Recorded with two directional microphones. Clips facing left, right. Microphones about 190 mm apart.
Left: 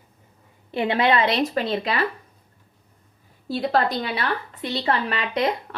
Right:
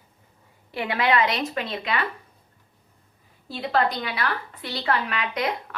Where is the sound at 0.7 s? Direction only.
25° left (ahead or behind).